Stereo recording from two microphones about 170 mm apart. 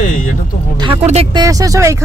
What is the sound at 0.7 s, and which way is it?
Speech, 30° right (ahead or behind).